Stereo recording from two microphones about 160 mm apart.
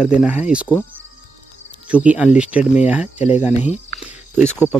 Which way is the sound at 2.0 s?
5° right (ahead or behind).